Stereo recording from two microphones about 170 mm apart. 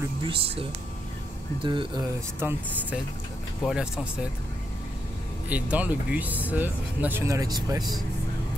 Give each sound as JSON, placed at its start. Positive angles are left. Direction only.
{"t": 0.3, "sound": "speech", "side_deg": -35}
{"t": 2.4, "sound": "speech", "side_deg": -15}
{"t": 3.6, "sound": "speech", "side_deg": -5}
{"t": 5.5, "sound": "speech", "side_deg": -10}